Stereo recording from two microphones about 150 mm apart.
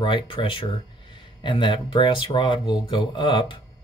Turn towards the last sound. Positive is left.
turn(degrees=35)  # may be behind; listen again after turning